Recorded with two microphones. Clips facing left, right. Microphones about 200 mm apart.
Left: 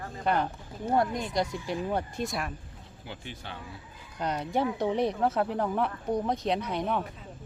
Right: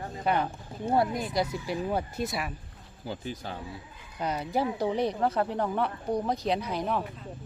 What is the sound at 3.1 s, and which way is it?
Speech, 40° right (ahead or behind).